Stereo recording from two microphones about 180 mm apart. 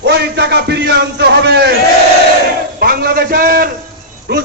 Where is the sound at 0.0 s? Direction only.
70° right (ahead or behind).